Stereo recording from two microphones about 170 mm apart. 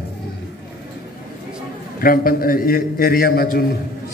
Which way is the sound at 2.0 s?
60° left (ahead or behind).